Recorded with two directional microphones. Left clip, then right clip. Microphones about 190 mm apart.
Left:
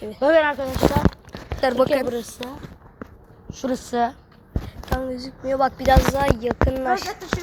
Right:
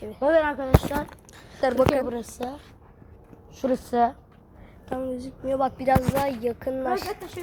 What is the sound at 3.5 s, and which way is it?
Speech, 35° right (ahead or behind).